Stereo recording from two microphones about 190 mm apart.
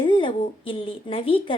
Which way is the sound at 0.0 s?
25° left (ahead or behind).